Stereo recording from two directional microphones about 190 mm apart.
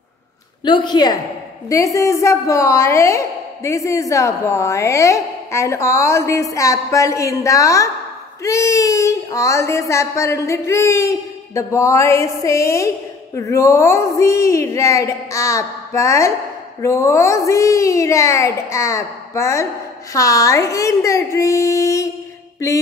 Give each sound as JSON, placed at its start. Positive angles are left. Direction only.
{"t": 0.7, "sound": "a woman's voice", "side_deg": 25}